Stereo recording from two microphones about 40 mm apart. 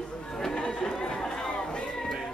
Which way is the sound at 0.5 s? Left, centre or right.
Left.